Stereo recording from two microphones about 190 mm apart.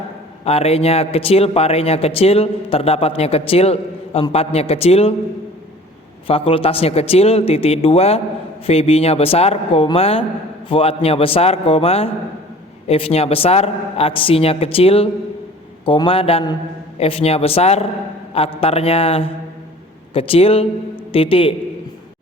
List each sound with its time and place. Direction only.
0.4 s a man's voice: 30° left (ahead or behind)
6.2 s a man's voice: 30° left (ahead or behind)